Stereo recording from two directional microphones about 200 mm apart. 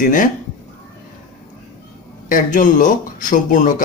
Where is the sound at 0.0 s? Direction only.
40° left (ahead or behind).